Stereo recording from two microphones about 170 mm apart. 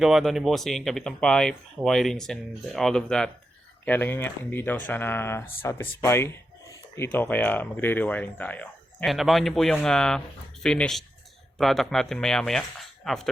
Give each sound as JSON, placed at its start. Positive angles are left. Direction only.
{"t": 0.0, "sound": "speech", "side_deg": 0}